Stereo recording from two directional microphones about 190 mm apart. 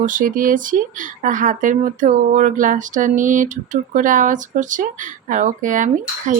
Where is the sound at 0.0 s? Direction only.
45° right (ahead or behind).